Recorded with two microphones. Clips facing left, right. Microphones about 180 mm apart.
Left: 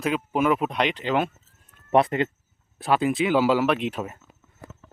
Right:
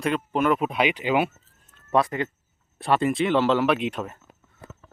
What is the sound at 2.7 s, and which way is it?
Speech, centre (ahead or behind).